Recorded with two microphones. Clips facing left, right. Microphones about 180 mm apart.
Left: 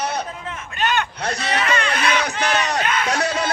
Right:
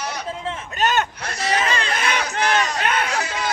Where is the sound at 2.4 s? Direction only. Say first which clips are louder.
Even; 65° left (ahead or behind).